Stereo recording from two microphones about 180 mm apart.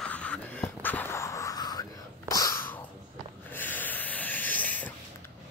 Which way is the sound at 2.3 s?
20° left (ahead or behind).